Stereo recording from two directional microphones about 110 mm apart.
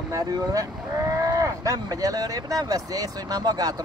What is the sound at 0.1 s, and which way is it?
Speech, 35° right (ahead or behind).